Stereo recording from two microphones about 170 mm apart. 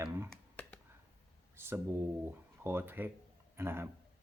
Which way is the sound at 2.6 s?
15° right (ahead or behind).